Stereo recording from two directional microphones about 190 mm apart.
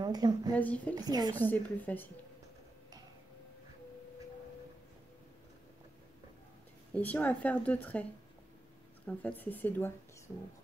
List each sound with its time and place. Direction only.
0.0 s a woman's voice: 20° right (ahead or behind)
0.6 s speech: 10° left (ahead or behind)
0.9 s a woman's voice: 20° right (ahead or behind)
1.3 s speech: 10° left (ahead or behind)
6.9 s speech: 10° left (ahead or behind)